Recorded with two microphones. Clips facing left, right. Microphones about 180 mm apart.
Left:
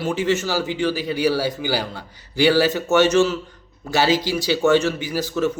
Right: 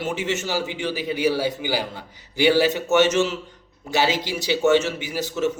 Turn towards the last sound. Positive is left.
turn(degrees=-20)  # may be behind; listen again after turning